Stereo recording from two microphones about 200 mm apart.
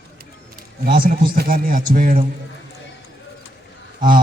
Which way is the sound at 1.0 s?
45° right (ahead or behind).